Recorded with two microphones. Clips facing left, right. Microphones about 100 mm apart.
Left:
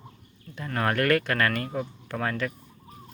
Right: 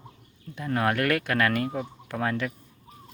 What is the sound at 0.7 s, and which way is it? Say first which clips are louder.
Speech: left 1 dB; 5° right (ahead or behind).